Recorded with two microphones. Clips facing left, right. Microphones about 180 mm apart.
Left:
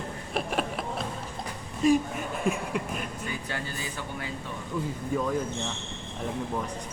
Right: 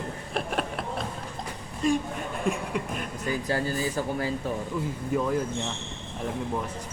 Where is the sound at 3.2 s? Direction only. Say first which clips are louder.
Right 7 dB; 40° right (ahead or behind).